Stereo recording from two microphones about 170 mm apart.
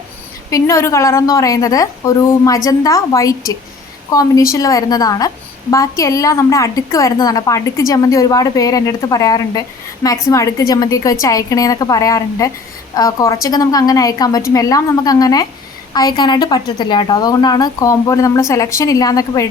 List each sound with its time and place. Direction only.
0.5 s a woman's voice: 15° left (ahead or behind)